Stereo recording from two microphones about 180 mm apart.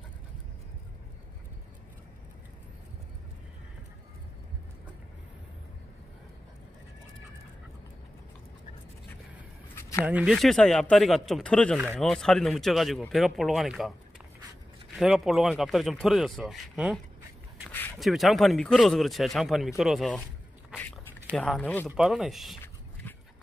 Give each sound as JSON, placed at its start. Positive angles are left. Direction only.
{"t": 9.8, "sound": "a sound", "side_deg": 15}
{"t": 10.0, "sound": "speech", "side_deg": -5}
{"t": 15.0, "sound": "speech", "side_deg": 0}
{"t": 17.6, "sound": "a sound", "side_deg": 10}
{"t": 17.9, "sound": "speech", "side_deg": 0}
{"t": 21.4, "sound": "speech", "side_deg": 5}